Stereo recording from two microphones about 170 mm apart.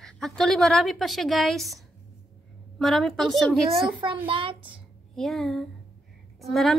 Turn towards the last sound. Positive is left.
turn(degrees=0)  # may be behind; listen again after turning